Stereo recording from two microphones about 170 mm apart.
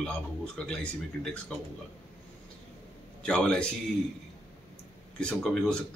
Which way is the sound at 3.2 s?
5° left (ahead or behind).